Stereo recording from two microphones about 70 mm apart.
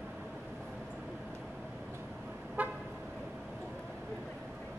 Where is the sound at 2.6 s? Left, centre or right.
Right.